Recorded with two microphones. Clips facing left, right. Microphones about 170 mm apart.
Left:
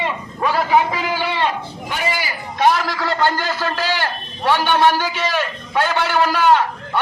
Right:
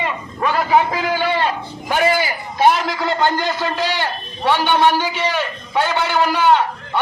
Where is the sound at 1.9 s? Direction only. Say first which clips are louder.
Right 7 dB; 55° right (ahead or behind).